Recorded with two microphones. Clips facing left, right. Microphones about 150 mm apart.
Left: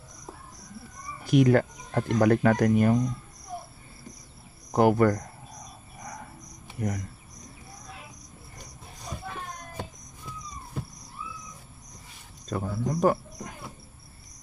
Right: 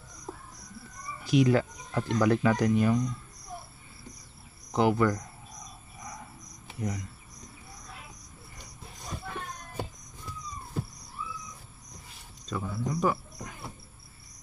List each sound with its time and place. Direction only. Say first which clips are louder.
1.2 s speech: left 3 dB; 55° left (ahead or behind)
4.7 s speech: left 4 dB; 50° left (ahead or behind)
6.8 s speech: left 3 dB; 55° left (ahead or behind)
12.4 s speech: left 3 dB; 50° left (ahead or behind)